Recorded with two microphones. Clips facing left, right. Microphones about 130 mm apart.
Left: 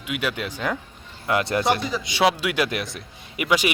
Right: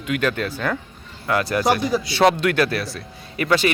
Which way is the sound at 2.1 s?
10° left (ahead or behind).